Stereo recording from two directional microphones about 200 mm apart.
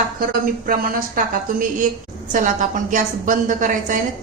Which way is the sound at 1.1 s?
40° right (ahead or behind).